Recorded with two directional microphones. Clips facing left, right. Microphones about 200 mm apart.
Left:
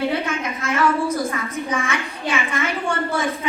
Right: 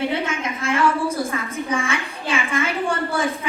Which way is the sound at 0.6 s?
30° right (ahead or behind).